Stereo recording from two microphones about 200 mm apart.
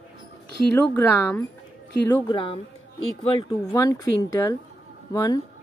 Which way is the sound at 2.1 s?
25° left (ahead or behind).